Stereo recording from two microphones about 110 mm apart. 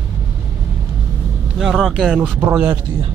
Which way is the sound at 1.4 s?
5° right (ahead or behind).